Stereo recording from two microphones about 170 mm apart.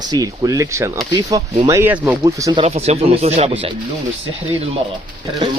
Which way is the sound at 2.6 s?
40° right (ahead or behind).